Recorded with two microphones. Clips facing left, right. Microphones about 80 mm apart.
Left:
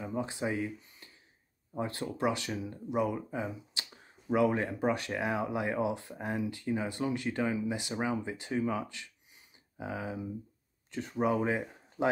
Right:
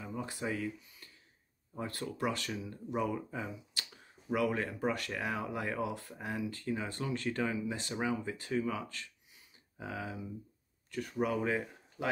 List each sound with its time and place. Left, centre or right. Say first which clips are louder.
0.0 s speech: left 5 dB; left
0.7 s a sound: left 1 dB; left
1.7 s speech: left 4 dB; left